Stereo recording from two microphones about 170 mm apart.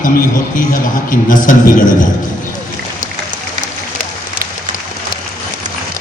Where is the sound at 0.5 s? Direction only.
50° left (ahead or behind).